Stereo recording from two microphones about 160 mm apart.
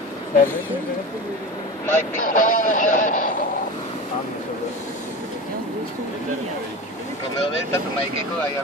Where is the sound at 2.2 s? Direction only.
55° left (ahead or behind).